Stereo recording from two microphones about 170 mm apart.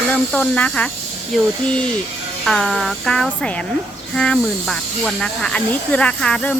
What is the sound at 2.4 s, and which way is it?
Speech, centre (ahead or behind).